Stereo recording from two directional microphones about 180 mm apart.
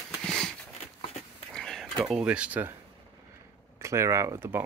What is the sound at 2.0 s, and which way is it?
Speech, 5° right (ahead or behind).